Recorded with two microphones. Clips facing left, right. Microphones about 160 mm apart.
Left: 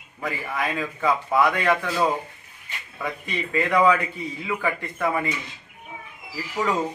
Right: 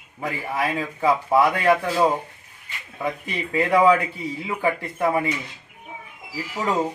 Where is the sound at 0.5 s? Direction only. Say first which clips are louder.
Right 3 dB; 30° right (ahead or behind).